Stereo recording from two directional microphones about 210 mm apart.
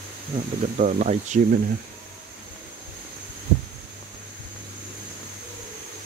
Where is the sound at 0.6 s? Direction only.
35° right (ahead or behind).